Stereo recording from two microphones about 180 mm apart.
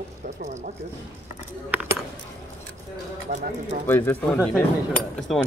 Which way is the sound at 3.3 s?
40° right (ahead or behind).